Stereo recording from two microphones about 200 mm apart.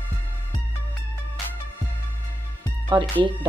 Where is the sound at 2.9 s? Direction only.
25° right (ahead or behind).